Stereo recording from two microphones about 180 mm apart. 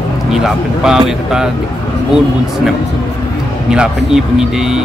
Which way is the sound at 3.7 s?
5° right (ahead or behind).